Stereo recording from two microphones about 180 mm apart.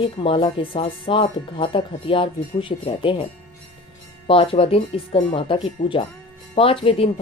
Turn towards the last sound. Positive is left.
turn(degrees=30)  # may be behind; listen again after turning